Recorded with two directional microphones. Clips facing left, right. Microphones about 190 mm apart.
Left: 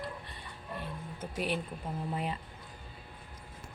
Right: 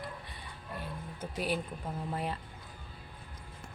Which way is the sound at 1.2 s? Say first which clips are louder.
Even; centre (ahead or behind).